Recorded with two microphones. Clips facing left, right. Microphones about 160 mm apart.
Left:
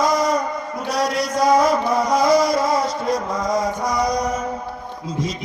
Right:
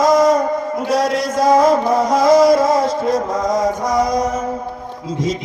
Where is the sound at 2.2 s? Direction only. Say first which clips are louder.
Right 8 dB; 50° right (ahead or behind).